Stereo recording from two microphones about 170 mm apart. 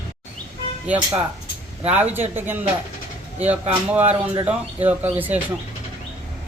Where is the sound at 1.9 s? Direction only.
10° right (ahead or behind).